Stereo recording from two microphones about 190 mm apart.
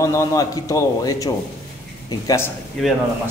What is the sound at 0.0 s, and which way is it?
A man's voice, 15° left (ahead or behind).